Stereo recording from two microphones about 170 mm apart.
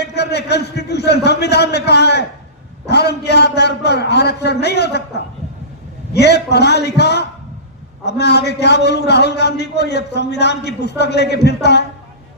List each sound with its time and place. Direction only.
0.0 s a man's voice: 75° left (ahead or behind)